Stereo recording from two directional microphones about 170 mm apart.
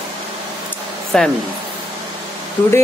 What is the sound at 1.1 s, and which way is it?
Speech, 5° left (ahead or behind).